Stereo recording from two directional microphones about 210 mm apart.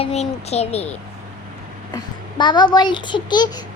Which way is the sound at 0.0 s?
30° left (ahead or behind).